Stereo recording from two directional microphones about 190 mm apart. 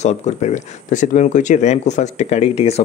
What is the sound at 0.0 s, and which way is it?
Speech, 35° left (ahead or behind).